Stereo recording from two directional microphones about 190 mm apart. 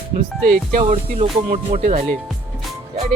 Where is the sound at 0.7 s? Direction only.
40° right (ahead or behind).